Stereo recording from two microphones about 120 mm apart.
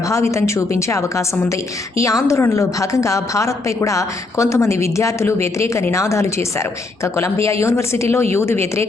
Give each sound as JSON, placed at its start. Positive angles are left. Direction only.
{"t": 0.1, "sound": "a woman's voice", "side_deg": 25}